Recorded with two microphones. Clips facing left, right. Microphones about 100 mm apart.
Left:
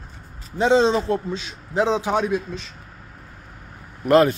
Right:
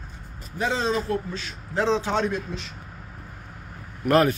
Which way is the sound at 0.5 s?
25° left (ahead or behind).